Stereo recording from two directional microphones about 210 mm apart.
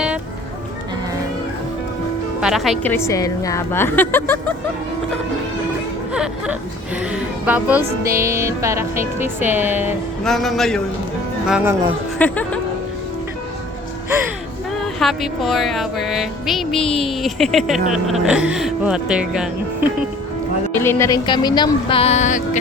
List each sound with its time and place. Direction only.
2.4 s a woman's voice: centre (ahead or behind)
6.1 s speech: 5° right (ahead or behind)
10.2 s speech: centre (ahead or behind)
12.2 s a woman's voice: 5° left (ahead or behind)
14.9 s speech: centre (ahead or behind)
20.8 s speech: 10° left (ahead or behind); by 22.4 s 35° left (ahead or behind)